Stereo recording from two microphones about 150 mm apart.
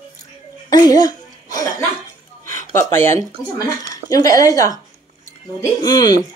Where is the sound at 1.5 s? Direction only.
25° left (ahead or behind).